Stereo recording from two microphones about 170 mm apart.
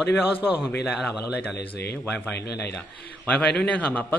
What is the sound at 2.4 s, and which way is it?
Speech, 75° left (ahead or behind).